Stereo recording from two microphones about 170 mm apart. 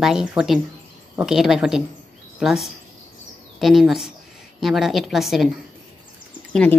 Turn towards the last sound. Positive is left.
turn(degrees=5)  # may be behind; listen again after turning